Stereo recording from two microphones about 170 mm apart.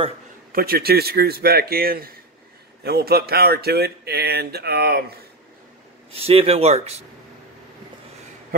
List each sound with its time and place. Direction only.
0.5 s a man's voice: 60° right (ahead or behind)
6.1 s speech: 35° right (ahead or behind)